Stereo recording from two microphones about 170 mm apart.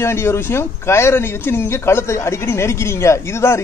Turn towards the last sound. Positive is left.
turn(degrees=15)  # may be behind; listen again after turning